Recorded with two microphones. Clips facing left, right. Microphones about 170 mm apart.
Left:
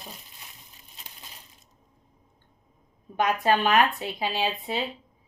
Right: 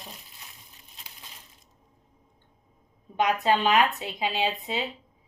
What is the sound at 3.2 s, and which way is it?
Speech, 20° right (ahead or behind).